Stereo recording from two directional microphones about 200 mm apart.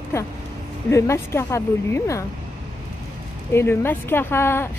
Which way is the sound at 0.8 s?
15° left (ahead or behind).